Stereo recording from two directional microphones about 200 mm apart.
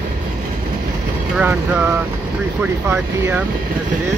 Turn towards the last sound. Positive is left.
turn(degrees=-10)  # may be behind; listen again after turning